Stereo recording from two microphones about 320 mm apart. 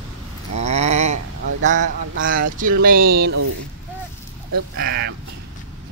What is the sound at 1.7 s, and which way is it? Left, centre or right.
Speech, right.